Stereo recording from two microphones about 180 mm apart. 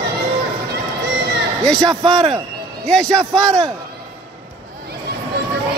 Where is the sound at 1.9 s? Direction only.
25° right (ahead or behind).